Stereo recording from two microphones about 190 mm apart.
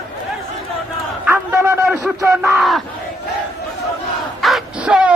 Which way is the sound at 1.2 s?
10° right (ahead or behind).